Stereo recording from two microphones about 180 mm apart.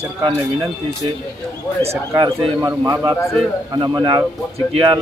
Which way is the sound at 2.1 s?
20° right (ahead or behind).